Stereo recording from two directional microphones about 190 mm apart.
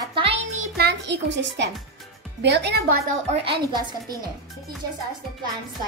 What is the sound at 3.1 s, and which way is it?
Speech, 35° right (ahead or behind).